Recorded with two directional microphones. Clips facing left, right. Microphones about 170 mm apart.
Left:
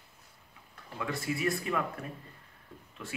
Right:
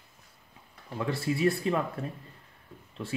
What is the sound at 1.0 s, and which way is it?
Speech, 30° right (ahead or behind).